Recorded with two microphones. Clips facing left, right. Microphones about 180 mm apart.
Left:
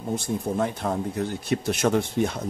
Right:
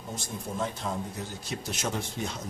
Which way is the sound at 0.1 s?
60° left (ahead or behind).